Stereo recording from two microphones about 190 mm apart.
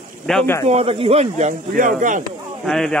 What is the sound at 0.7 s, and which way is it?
Speech, 30° right (ahead or behind).